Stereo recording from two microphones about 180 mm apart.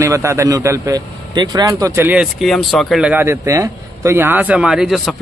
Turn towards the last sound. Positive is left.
turn(degrees=0)  # may be behind; listen again after turning